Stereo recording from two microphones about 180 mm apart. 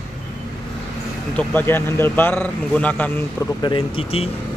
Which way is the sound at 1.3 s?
10° left (ahead or behind).